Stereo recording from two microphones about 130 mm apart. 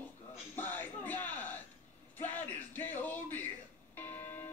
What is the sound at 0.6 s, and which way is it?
Music, 15° left (ahead or behind).